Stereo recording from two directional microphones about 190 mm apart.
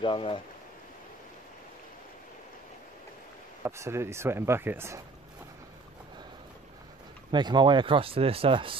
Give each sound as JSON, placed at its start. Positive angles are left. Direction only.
{"t": 0.0, "sound": "speech", "side_deg": 25}
{"t": 3.6, "sound": "speech", "side_deg": -15}
{"t": 7.2, "sound": "speech", "side_deg": -25}